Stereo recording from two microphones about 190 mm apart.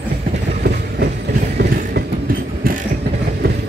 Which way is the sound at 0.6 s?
60° right (ahead or behind).